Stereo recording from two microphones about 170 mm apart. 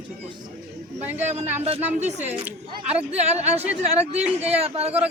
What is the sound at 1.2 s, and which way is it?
A man's voice, 40° right (ahead or behind).